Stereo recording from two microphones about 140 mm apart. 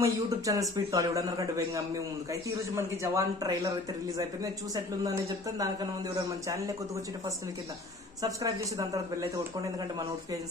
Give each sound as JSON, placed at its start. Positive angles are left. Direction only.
{"t": 0.0, "sound": "a man's voice", "side_deg": -25}
{"t": 2.7, "sound": "a man's voice", "side_deg": -20}
{"t": 4.7, "sound": "a man's voice", "side_deg": -25}
{"t": 8.2, "sound": "a man's voice", "side_deg": -25}